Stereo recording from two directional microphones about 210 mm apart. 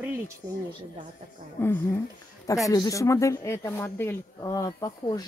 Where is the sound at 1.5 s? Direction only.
10° left (ahead or behind).